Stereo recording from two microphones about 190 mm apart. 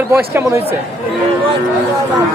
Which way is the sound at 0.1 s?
10° right (ahead or behind).